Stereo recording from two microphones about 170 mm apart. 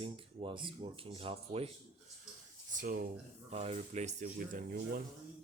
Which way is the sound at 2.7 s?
50° right (ahead or behind).